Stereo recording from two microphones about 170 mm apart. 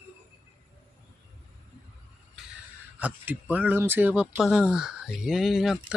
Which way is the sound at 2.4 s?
5° right (ahead or behind).